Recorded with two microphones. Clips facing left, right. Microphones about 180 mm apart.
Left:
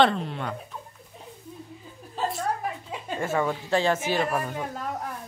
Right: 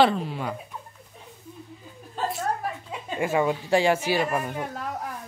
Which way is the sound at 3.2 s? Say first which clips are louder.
Right 3 dB; 15° right (ahead or behind).